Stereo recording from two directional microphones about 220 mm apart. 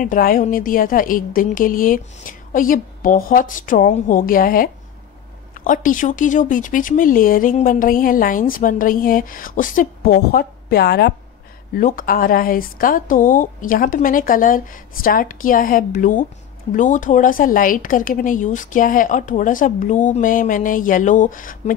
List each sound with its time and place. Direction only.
0.0 s speech: 40° left (ahead or behind)